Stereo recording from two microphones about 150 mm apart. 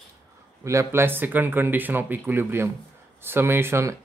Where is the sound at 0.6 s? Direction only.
20° right (ahead or behind).